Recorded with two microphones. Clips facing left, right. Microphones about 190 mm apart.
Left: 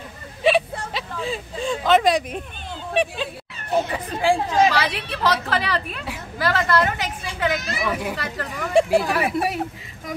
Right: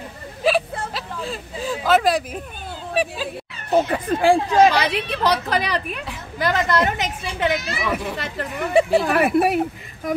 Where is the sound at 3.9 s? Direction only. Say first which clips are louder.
Right 4 dB; 55° right (ahead or behind).